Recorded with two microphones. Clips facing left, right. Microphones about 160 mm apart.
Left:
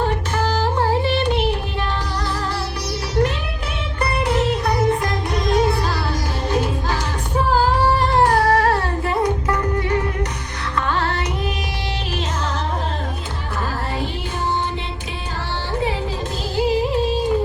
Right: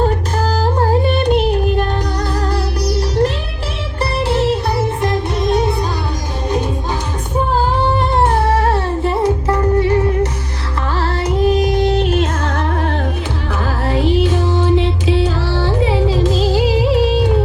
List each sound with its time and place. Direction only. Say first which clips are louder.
0.4 s music: right 3 dB; 40° right (ahead or behind)
2.8 s music: right 4 dB; 35° right (ahead or behind)
7.9 s music: right 1 dB; 25° right (ahead or behind); by 12.6 s 55° right (ahead or behind)
13.8 s music: right 11 dB; 90° right; by 17.3 s 75° right (ahead or behind)